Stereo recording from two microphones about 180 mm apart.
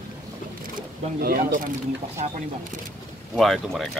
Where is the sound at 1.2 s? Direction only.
55° right (ahead or behind).